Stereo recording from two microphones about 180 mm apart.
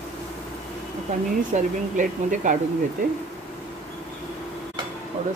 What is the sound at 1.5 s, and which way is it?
A woman's voice, 45° right (ahead or behind).